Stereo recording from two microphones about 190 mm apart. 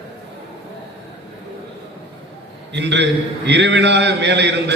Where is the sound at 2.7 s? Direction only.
65° right (ahead or behind).